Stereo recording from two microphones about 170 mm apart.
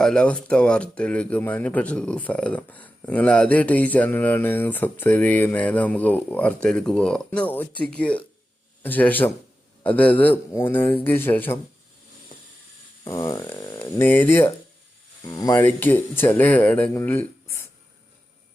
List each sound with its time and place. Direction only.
0.0 s speech: 5° left (ahead or behind)
13.1 s speech: 15° left (ahead or behind)